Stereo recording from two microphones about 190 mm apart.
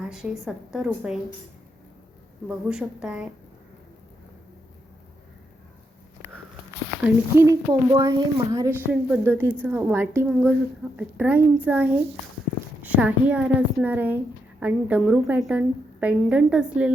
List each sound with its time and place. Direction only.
0.0 s a woman's voice: 5° right (ahead or behind)
2.5 s a woman's voice: 5° right (ahead or behind)
7.0 s a woman's voice: 15° right (ahead or behind)
8.9 s a woman's voice: 10° right (ahead or behind)